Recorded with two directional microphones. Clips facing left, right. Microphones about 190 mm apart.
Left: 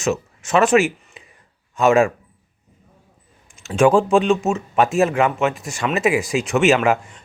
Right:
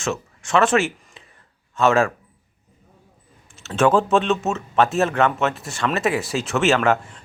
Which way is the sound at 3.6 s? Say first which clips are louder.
Left 3 dB; 15° left (ahead or behind).